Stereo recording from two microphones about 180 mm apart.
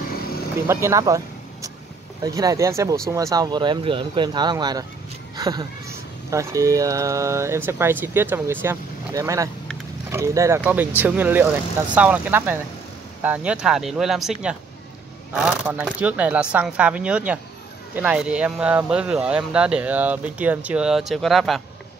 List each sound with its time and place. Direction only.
0.7 s speech: 15° right (ahead or behind)
15.3 s speech: 5° right (ahead or behind)